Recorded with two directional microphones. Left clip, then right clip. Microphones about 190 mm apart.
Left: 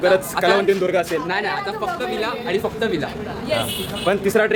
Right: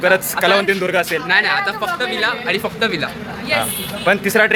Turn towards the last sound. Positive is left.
turn(degrees=0)  # may be behind; listen again after turning